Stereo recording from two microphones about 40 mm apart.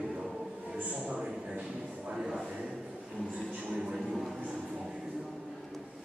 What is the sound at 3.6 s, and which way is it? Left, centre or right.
Speech, right.